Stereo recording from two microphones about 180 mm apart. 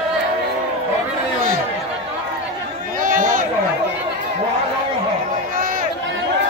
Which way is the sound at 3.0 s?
50° right (ahead or behind).